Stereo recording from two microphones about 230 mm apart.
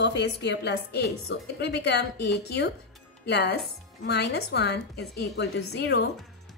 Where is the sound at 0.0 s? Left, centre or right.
Left.